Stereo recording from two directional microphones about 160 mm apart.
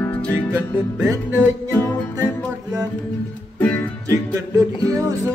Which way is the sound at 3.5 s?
10° left (ahead or behind).